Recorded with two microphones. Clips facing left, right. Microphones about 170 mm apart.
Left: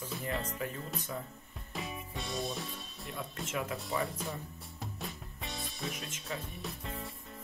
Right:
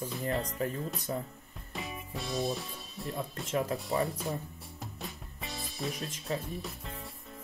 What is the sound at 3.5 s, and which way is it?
Speech, 35° right (ahead or behind).